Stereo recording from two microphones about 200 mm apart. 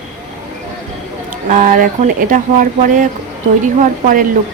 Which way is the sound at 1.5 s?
40° right (ahead or behind).